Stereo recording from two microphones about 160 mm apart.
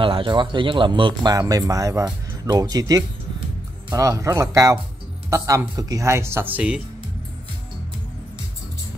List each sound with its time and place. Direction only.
0.0 s speech: 30° right (ahead or behind); by 6.8 s 10° right (ahead or behind)